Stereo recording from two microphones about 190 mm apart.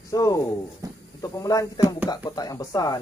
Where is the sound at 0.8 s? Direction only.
20° right (ahead or behind).